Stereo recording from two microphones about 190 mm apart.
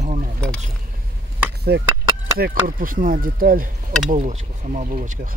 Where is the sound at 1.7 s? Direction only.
60° right (ahead or behind).